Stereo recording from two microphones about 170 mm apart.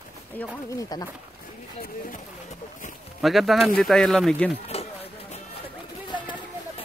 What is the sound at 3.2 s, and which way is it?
Speech, centre (ahead or behind).